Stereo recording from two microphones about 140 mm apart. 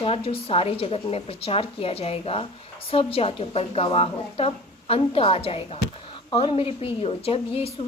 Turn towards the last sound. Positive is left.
turn(degrees=45)  # may be behind; listen again after turning